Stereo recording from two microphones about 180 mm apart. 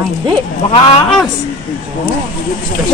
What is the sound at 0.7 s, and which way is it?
Speech, 30° left (ahead or behind).